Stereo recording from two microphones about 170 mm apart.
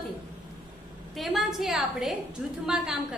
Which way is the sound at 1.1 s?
Centre (ahead or behind).